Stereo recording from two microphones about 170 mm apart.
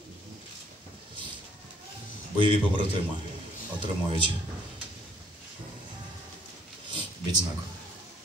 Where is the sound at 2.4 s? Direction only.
30° right (ahead or behind).